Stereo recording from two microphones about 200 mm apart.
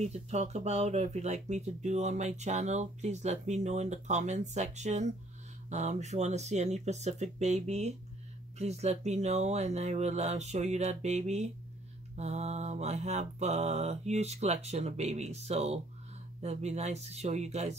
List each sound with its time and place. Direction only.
0.0 s speech: 35° right (ahead or behind)